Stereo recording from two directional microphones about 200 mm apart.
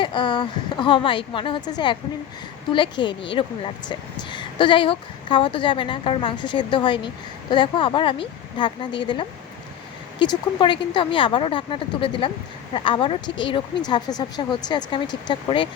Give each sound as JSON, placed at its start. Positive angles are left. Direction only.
{"t": 0.0, "sound": "speech", "side_deg": 25}